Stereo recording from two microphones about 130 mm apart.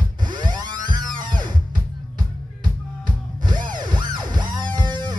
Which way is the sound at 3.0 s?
35° right (ahead or behind).